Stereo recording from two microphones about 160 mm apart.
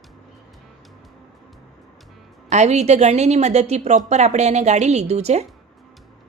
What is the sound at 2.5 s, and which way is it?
A woman's voice, 45° right (ahead or behind).